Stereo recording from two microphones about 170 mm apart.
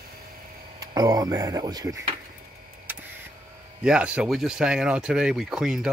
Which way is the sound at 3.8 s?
5° right (ahead or behind).